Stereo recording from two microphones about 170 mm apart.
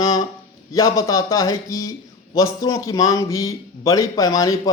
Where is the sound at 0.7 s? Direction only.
20° left (ahead or behind).